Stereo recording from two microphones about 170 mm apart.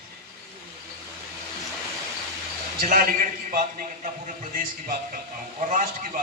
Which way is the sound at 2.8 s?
60° right (ahead or behind).